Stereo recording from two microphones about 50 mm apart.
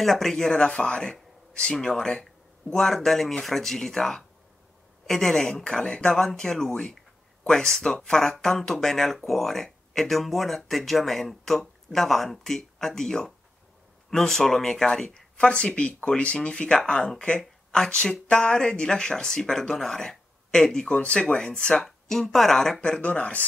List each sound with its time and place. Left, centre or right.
0.0 s speech: centre; by 21.8 s left
22.2 s speech: centre
22.8 s speech: left